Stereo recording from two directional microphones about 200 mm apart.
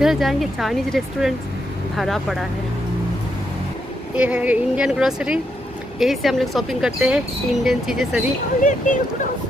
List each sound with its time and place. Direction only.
0.0 s speech: centre (ahead or behind)
4.1 s speech: 5° right (ahead or behind)
8.6 s speech: 40° left (ahead or behind)